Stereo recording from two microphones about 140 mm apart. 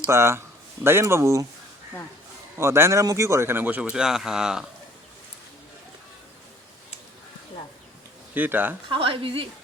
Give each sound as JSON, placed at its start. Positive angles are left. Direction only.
{"t": 0.0, "sound": "speech", "side_deg": -20}
{"t": 2.6, "sound": "a man's voice", "side_deg": -20}
{"t": 8.4, "sound": "a man's voice", "side_deg": -15}
{"t": 8.9, "sound": "a woman's voice", "side_deg": -40}